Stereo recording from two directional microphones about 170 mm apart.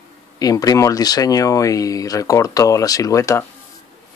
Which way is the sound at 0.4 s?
20° left (ahead or behind).